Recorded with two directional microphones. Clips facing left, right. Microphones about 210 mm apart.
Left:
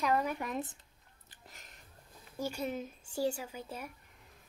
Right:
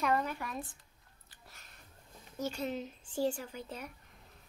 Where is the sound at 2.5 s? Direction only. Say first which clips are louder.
Even; 10° left (ahead or behind).